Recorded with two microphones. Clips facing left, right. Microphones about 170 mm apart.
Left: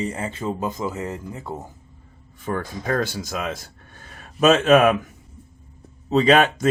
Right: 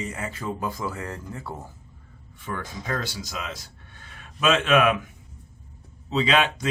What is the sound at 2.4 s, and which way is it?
Speech, 45° left (ahead or behind).